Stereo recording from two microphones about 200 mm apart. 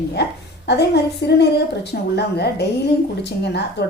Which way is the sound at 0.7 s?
55° left (ahead or behind).